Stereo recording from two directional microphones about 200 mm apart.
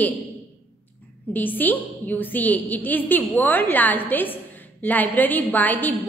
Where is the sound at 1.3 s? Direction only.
10° left (ahead or behind).